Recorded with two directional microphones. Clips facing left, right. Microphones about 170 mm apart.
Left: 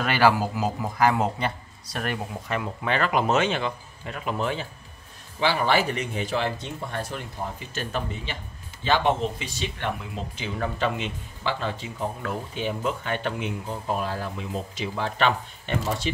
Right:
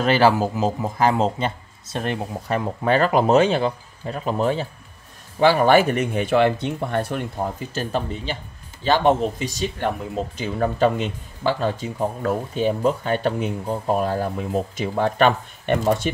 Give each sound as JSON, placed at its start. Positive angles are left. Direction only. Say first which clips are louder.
{"t": 0.0, "sound": "a man's voice", "louder": "right 4 dB", "side_deg": -25}
{"t": 2.5, "sound": "speech", "louder": "right 7 dB", "side_deg": -40}
{"t": 5.4, "sound": "speech", "louder": "right 8 dB", "side_deg": -50}
{"t": 7.5, "sound": "speech", "louder": "right 6 dB", "side_deg": -35}